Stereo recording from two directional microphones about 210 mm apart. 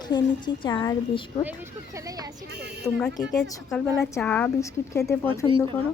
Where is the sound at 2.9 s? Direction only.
5° left (ahead or behind).